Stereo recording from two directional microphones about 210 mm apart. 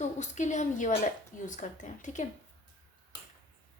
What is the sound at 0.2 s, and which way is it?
A woman's voice, 35° left (ahead or behind).